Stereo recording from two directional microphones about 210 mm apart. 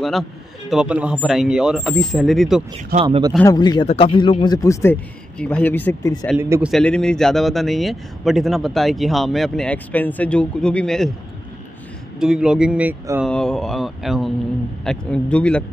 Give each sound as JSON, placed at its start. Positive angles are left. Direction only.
{"t": 0.7, "sound": "a man's voice", "side_deg": -5}
{"t": 2.9, "sound": "speech", "side_deg": -30}
{"t": 3.5, "sound": "speech", "side_deg": 20}
{"t": 5.4, "sound": "speech", "side_deg": 5}
{"t": 6.3, "sound": "a man's voice", "side_deg": -5}
{"t": 12.2, "sound": "a man's voice", "side_deg": -5}
{"t": 13.2, "sound": "a man's voice", "side_deg": 5}